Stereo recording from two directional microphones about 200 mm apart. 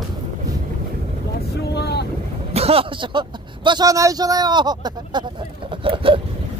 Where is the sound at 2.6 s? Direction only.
30° right (ahead or behind).